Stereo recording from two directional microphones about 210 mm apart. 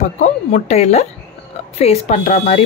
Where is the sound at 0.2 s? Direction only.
30° left (ahead or behind).